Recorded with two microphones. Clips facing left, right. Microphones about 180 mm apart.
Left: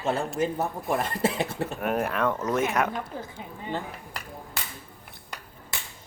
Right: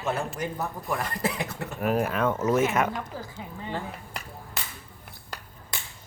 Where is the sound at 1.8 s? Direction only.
Centre (ahead or behind).